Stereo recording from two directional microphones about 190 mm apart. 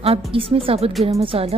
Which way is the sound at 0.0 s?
30° right (ahead or behind).